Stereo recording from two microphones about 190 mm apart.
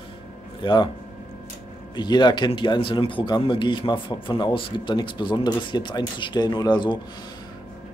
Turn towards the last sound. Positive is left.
turn(degrees=25)  # may be behind; listen again after turning